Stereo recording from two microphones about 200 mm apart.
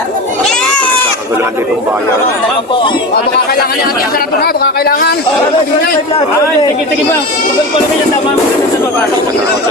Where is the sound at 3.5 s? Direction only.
50° left (ahead or behind).